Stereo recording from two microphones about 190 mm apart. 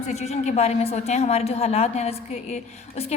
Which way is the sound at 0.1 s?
35° left (ahead or behind).